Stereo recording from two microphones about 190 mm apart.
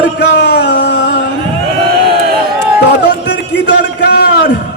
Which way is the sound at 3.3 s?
65° left (ahead or behind).